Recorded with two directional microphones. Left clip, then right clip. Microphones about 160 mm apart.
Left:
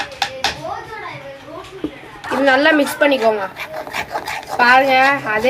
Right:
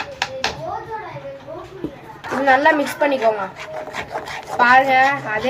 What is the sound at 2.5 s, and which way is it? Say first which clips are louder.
Speech: left 1 dB; 5° left (ahead or behind).